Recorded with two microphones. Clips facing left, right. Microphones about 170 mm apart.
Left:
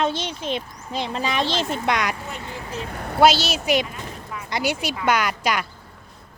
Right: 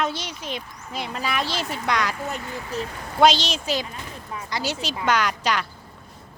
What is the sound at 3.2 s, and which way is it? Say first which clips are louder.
Speech: left 1 dB; 5° left (ahead or behind).